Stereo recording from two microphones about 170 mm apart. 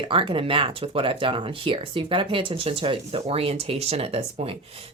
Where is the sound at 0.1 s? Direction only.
30° right (ahead or behind).